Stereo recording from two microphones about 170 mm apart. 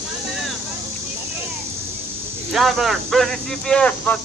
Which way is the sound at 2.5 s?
Centre (ahead or behind).